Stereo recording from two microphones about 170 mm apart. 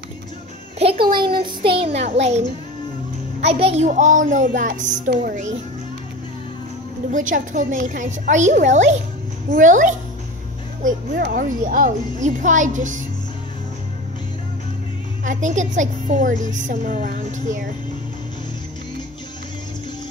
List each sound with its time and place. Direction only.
0.7 s a child's voice: 35° right (ahead or behind)
1.1 s child singing: 30° right (ahead or behind)
2.0 s a child's voice: 40° right (ahead or behind)
7.1 s a woman's voice: 50° right (ahead or behind)
15.2 s a woman's voice: 45° right (ahead or behind)